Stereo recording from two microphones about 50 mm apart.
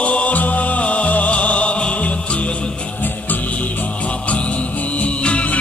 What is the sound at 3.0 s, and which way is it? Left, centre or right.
Music, left.